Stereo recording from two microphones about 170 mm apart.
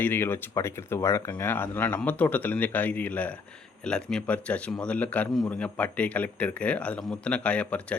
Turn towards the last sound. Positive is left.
turn(degrees=5)  # may be behind; listen again after turning